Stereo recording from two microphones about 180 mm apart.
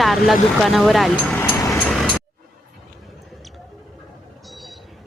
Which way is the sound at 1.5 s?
20° left (ahead or behind).